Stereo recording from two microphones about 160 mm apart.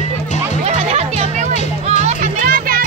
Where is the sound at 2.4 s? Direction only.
65° right (ahead or behind).